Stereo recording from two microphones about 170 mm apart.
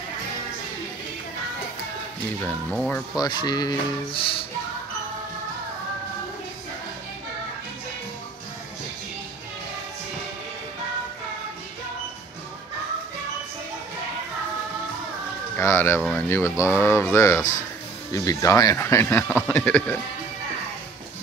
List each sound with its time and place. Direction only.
2.7 s speech: 10° left (ahead or behind)
3.2 s speech: 25° left (ahead or behind)
15.5 s speech: 15° left (ahead or behind)
16.0 s speech: 5° right (ahead or behind)
16.3 s speech: 15° left (ahead or behind)